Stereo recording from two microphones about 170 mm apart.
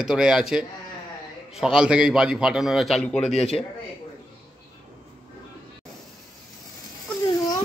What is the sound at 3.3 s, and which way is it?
Speech, 40° left (ahead or behind).